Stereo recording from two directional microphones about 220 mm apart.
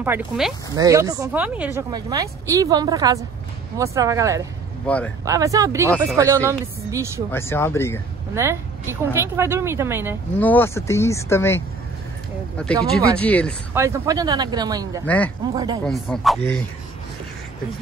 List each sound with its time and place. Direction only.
0.0 s speech: 10° right (ahead or behind)
4.8 s speech: 5° left (ahead or behind)
5.2 s speech: 15° right (ahead or behind)
7.2 s speech: 10° left (ahead or behind)
8.4 s speech: 10° right (ahead or behind)
10.4 s speech: 10° left (ahead or behind)
13.7 s speech: 15° right (ahead or behind)
15.0 s speech: 5° left (ahead or behind)
15.5 s speech: 20° right (ahead or behind)
15.8 s speech: centre (ahead or behind)